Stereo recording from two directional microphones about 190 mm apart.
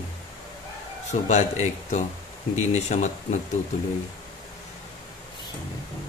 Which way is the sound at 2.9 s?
40° left (ahead or behind).